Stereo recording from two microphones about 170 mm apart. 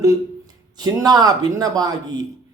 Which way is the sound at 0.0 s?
20° right (ahead or behind).